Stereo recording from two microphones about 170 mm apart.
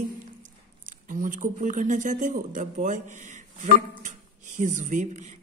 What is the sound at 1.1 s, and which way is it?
Speech, 50° right (ahead or behind).